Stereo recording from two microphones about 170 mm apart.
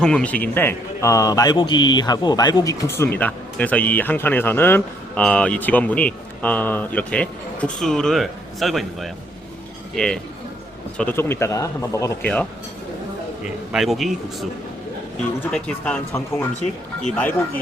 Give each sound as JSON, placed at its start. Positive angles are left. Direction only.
{"t": 0.0, "sound": "a man's voice", "side_deg": 5}
{"t": 13.4, "sound": "speech", "side_deg": 0}
{"t": 15.5, "sound": "speech", "side_deg": 5}